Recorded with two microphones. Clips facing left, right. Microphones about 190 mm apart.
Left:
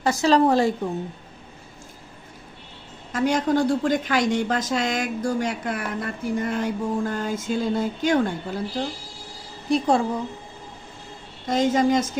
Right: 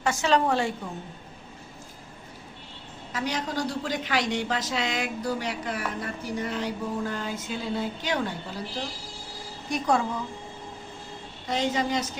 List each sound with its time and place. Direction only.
0.0 s a woman's voice: 35° left (ahead or behind)
3.1 s a woman's voice: 50° left (ahead or behind)
9.6 s a woman's voice: 30° left (ahead or behind)
11.4 s a woman's voice: 45° left (ahead or behind)